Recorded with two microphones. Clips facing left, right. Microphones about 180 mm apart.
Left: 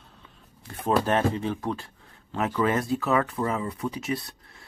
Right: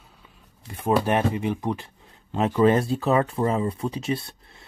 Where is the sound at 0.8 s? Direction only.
10° right (ahead or behind).